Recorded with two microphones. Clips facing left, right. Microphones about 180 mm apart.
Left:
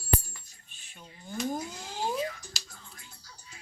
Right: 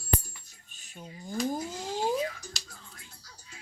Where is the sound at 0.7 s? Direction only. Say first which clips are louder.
Right 6 dB; 40° right (ahead or behind).